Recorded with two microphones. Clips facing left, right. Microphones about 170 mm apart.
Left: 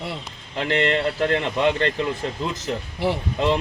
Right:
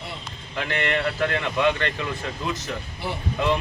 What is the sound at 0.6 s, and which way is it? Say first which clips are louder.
A man's voice: left 4 dB; 30° left (ahead or behind).